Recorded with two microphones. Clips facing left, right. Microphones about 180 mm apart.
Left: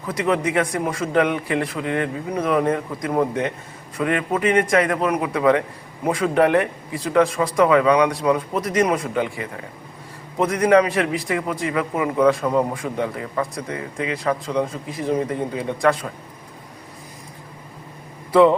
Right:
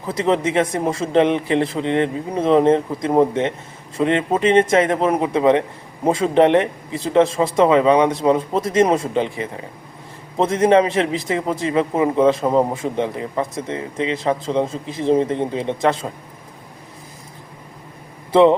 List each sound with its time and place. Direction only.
0.1 s a man's voice: 25° right (ahead or behind)
18.3 s speech: 20° right (ahead or behind)